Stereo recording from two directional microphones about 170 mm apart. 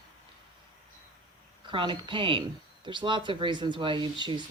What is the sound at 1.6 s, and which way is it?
Speech, 30° right (ahead or behind).